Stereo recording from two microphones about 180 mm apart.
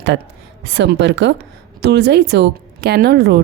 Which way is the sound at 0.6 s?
80° right.